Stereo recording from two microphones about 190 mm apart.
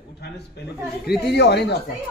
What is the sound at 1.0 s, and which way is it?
Speech, 60° left (ahead or behind).